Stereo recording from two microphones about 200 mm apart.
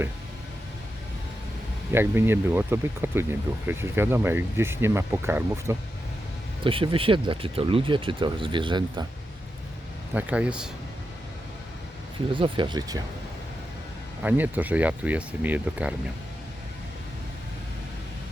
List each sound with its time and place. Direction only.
1.9 s speech: 10° right (ahead or behind)
6.7 s speech: 25° right (ahead or behind)
10.2 s speech: 5° right (ahead or behind)
12.3 s speech: 25° right (ahead or behind)
14.2 s speech: 10° right (ahead or behind)